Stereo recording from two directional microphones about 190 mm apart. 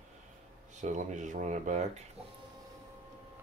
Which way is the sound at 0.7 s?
40° right (ahead or behind).